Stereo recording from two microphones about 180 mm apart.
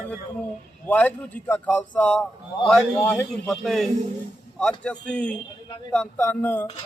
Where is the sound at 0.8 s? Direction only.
10° left (ahead or behind).